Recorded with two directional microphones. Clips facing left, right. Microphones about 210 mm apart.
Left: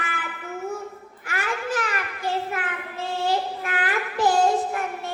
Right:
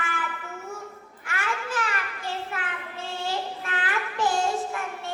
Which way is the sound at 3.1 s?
35° left (ahead or behind).